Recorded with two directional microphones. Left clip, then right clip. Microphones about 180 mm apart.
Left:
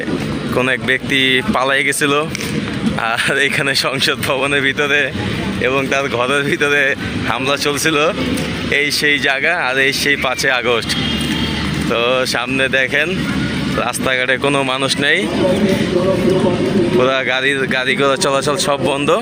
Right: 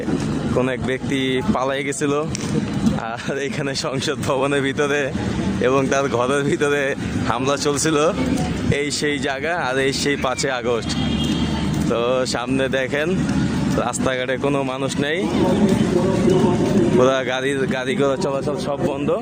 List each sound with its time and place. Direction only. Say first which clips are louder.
0.5 s speech: left 7 dB; 15° right (ahead or behind)
4.0 s speech: left 5 dB; 20° right (ahead or behind)
11.9 s speech: left 4 dB; 15° right (ahead or behind)
14.1 s speech: left 9 dB; 10° right (ahead or behind)
17.0 s speech: left 4 dB; 20° right (ahead or behind)
18.7 s speech: left 6 dB; 5° left (ahead or behind)